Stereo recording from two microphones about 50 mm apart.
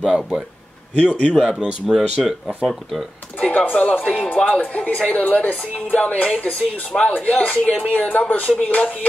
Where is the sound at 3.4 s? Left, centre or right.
Left.